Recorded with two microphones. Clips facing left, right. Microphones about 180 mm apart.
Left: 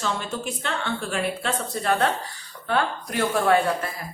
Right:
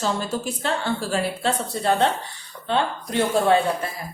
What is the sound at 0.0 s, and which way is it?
A woman's voice, 35° right (ahead or behind).